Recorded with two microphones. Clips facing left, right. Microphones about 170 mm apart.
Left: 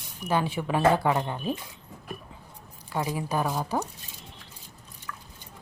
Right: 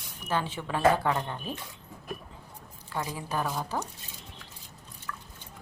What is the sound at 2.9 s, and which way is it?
Speech, 15° left (ahead or behind).